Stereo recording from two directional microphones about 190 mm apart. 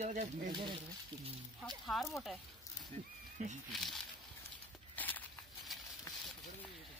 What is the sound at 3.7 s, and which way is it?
Speech, centre (ahead or behind).